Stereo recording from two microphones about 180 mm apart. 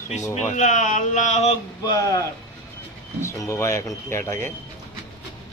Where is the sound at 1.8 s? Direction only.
20° left (ahead or behind).